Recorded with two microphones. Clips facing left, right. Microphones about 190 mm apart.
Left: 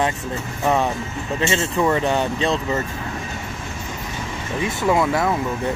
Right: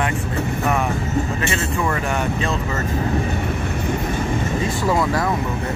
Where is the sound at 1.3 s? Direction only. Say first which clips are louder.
Left 2 dB; 25° left (ahead or behind).